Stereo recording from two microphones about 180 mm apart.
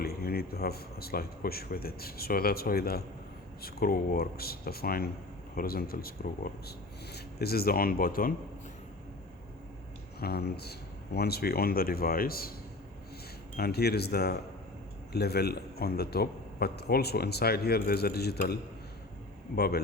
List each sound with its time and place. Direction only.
0.0 s a man's voice: 60° left (ahead or behind)
10.2 s a man's voice: 60° left (ahead or behind)
13.6 s a man's voice: 60° left (ahead or behind)
19.5 s a man's voice: 60° left (ahead or behind)